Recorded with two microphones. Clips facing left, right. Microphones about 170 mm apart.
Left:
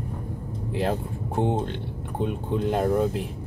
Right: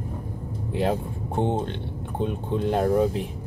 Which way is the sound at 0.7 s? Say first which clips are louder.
Right 2 dB; centre (ahead or behind).